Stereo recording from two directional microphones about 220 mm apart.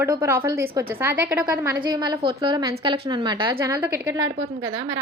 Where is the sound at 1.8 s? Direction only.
20° right (ahead or behind).